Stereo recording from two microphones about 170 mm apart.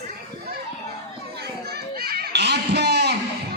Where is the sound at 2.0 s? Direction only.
65° right (ahead or behind).